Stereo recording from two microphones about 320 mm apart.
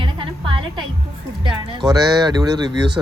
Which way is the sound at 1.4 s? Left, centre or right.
Centre.